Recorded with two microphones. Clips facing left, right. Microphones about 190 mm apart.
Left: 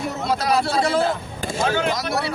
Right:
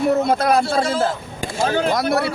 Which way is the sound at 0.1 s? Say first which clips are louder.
Right 4 dB; 50° right (ahead or behind).